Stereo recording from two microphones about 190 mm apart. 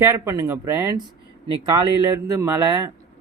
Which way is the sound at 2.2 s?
15° right (ahead or behind).